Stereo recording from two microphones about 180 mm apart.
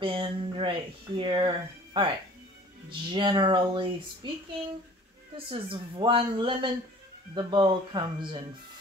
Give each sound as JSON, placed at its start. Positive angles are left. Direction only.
{"t": 0.0, "sound": "speech", "side_deg": -30}
{"t": 5.5, "sound": "speech", "side_deg": -30}